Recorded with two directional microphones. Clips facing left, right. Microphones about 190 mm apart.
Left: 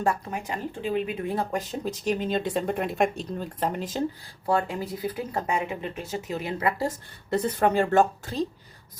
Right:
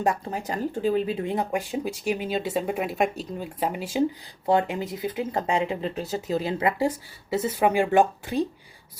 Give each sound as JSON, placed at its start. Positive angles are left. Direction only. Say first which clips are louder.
{"t": 0.3, "sound": "speech", "louder": "right 3 dB", "side_deg": -35}
{"t": 1.5, "sound": "speech", "louder": "right 2 dB", "side_deg": -10}
{"t": 4.4, "sound": "speech", "louder": "right 3 dB", "side_deg": -20}
{"t": 7.3, "sound": "speech", "louder": "even", "side_deg": -5}